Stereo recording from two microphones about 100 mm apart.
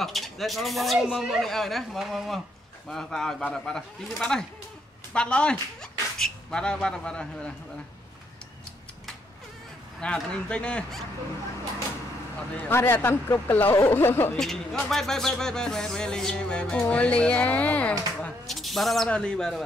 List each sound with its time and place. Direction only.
0.0 s speech: centre (ahead or behind)
4.2 s music: 5° left (ahead or behind)
5.1 s speech: 10° left (ahead or behind)
9.9 s music: 10° left (ahead or behind)
12.5 s speech: 20° left (ahead or behind)
14.4 s speech: 5° left (ahead or behind)
14.9 s music: 5° left (ahead or behind)
18.5 s bird: centre (ahead or behind)
19.0 s music: 10° left (ahead or behind)